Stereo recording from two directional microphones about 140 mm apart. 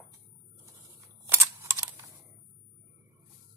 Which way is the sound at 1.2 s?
15° right (ahead or behind).